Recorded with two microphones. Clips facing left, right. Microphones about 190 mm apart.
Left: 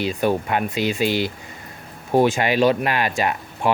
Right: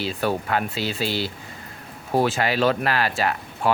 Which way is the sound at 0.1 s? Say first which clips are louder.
Left 3 dB; 15° left (ahead or behind).